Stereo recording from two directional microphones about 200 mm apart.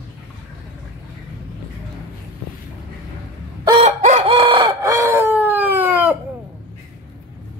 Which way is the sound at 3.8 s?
35° right (ahead or behind).